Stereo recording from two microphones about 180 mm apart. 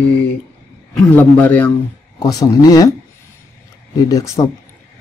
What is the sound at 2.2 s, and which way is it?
Speech, 20° left (ahead or behind).